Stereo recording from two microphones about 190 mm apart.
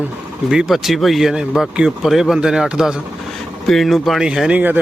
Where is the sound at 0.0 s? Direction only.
5° right (ahead or behind).